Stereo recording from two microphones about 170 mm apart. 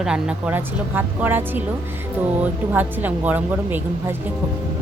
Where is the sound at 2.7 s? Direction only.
10° right (ahead or behind).